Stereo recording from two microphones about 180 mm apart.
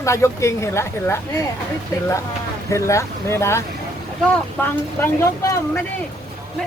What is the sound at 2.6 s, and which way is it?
Speech, 15° left (ahead or behind).